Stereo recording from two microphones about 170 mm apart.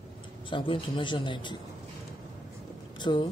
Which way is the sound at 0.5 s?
30° left (ahead or behind).